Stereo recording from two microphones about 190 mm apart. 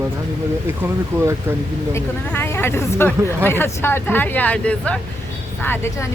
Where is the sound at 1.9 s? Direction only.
15° left (ahead or behind).